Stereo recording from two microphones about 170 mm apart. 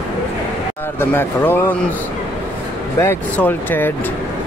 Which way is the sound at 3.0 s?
10° left (ahead or behind).